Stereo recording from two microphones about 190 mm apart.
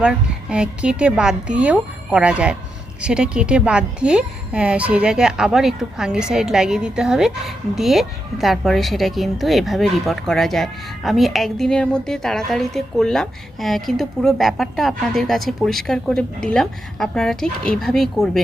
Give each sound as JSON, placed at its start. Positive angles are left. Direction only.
{"t": 0.0, "sound": "a woman's voice", "side_deg": -5}